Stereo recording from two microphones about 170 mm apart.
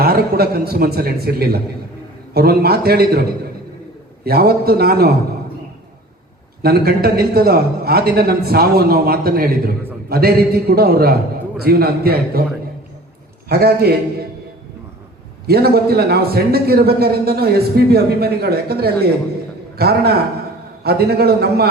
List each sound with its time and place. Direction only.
0.0 s a man's voice: 65° right (ahead or behind)
6.6 s a man's voice: 65° right (ahead or behind)
13.5 s a man's voice: 70° right (ahead or behind)
15.4 s a man's voice: 65° right (ahead or behind)